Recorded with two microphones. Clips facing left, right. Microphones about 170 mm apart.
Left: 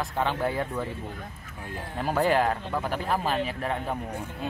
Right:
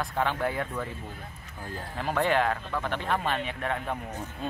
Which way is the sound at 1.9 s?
5° left (ahead or behind).